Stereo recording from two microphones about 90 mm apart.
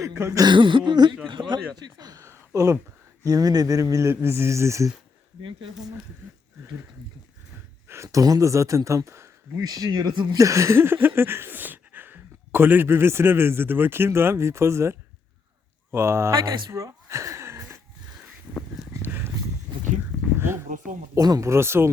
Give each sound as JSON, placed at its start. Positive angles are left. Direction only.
{"t": 0.0, "sound": "speech", "side_deg": -30}
{"t": 0.4, "sound": "speech", "side_deg": -60}
{"t": 2.2, "sound": "a sound", "side_deg": -30}
{"t": 3.2, "sound": "speech", "side_deg": -45}
{"t": 5.4, "sound": "speech", "side_deg": -75}
{"t": 7.9, "sound": "speech", "side_deg": -35}
{"t": 9.6, "sound": "speech", "side_deg": -45}
{"t": 10.3, "sound": "a sound", "side_deg": -35}
{"t": 15.9, "sound": "speech", "side_deg": -30}
{"t": 16.4, "sound": "speech", "side_deg": -50}
{"t": 16.7, "sound": "a sound", "side_deg": -35}
{"t": 19.0, "sound": "a sound", "side_deg": -20}
{"t": 21.2, "sound": "speech", "side_deg": -45}
{"t": 21.5, "sound": "speech", "side_deg": -30}